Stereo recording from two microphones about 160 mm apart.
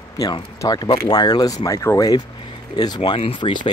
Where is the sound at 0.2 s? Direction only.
25° left (ahead or behind).